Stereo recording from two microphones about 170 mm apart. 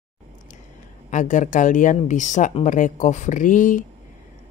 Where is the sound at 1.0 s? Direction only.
45° left (ahead or behind).